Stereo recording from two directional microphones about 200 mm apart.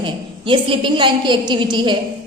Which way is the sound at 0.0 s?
25° right (ahead or behind).